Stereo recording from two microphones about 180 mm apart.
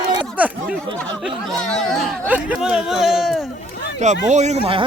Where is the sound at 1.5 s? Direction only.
5° left (ahead or behind).